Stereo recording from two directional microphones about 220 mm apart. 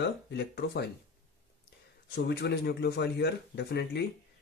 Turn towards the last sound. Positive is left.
turn(degrees=50)  # may be behind; listen again after turning